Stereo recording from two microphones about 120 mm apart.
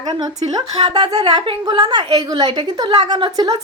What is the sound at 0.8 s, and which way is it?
Speech, 40° right (ahead or behind).